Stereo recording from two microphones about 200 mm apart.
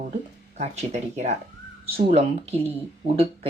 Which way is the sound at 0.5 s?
35° right (ahead or behind).